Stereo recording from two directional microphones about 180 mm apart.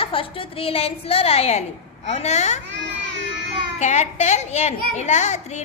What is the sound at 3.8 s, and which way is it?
A woman's voice, 40° left (ahead or behind).